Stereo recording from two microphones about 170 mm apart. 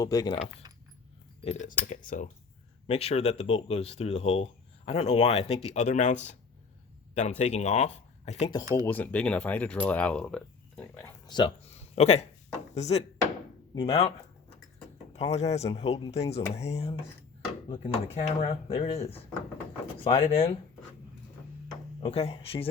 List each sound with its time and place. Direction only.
0.0 s speech: 20° left (ahead or behind)
1.5 s speech: 45° left (ahead or behind)
2.8 s speech: 35° left (ahead or behind)
8.7 s speech: 10° left (ahead or behind)
11.0 s speech: 25° left (ahead or behind)
11.8 s a sound: 40° left (ahead or behind)
12.7 s speech: 40° left (ahead or behind)
15.1 s speech: 40° left (ahead or behind)
22.0 s speech: 35° left (ahead or behind)